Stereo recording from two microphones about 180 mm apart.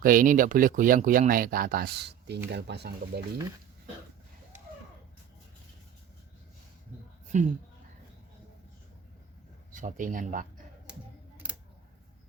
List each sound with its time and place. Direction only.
0.0 s speech: 50° right (ahead or behind); by 3.2 s 65° right (ahead or behind)
7.3 s speech: 45° right (ahead or behind)
9.7 s speech: 45° right (ahead or behind)